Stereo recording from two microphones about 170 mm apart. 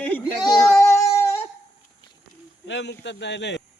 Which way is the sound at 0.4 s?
25° left (ahead or behind).